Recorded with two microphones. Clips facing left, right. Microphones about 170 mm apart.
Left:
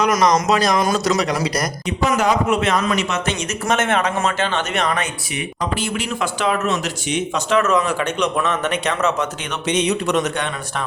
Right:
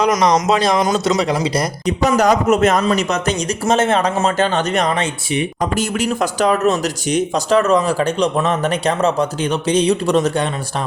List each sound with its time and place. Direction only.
0.0 s a man's voice: 30° right (ahead or behind)
4.9 s speech: 30° right (ahead or behind)
5.7 s a man's voice: 40° right (ahead or behind)